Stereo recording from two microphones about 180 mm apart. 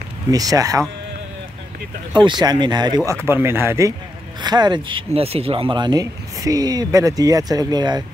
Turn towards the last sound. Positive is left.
turn(degrees=-25)  # may be behind; listen again after turning